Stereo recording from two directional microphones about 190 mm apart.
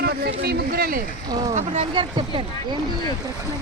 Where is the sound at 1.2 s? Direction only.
20° right (ahead or behind).